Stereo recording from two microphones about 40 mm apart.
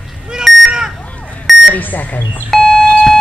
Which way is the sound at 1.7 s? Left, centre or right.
Left.